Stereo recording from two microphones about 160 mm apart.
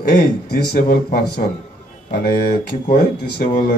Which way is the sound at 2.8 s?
65° left (ahead or behind).